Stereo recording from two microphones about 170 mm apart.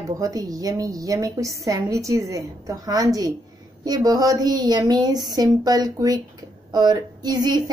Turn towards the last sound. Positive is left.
turn(degrees=-25)  # may be behind; listen again after turning